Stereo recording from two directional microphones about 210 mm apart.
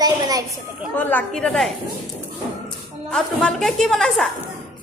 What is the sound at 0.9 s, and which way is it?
Speech, 5° left (ahead or behind).